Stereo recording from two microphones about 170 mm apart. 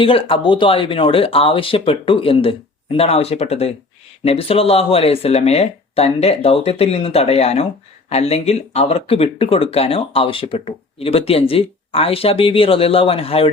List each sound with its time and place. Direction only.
0.0 s speech: 30° left (ahead or behind)